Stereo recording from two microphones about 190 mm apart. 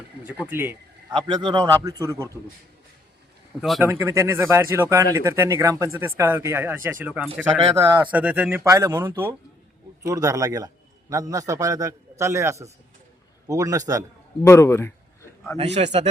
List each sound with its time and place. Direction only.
0.3 s speech: 10° right (ahead or behind)
1.1 s a man's voice: 25° right (ahead or behind)
3.6 s speech: centre (ahead or behind)
3.8 s speech: 15° right (ahead or behind)
14.4 s a man's voice: 15° left (ahead or behind)
15.5 s a man's voice: 35° right (ahead or behind)